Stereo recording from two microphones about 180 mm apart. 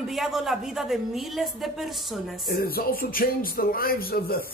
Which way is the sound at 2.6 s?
55° left (ahead or behind).